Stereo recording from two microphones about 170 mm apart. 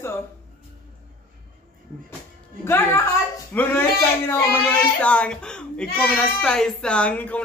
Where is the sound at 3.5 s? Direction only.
10° left (ahead or behind).